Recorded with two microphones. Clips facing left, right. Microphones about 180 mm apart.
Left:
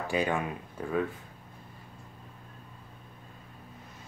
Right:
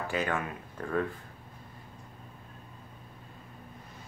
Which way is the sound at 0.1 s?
15° left (ahead or behind).